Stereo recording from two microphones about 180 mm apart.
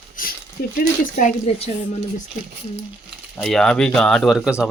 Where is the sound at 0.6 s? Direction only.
60° left (ahead or behind).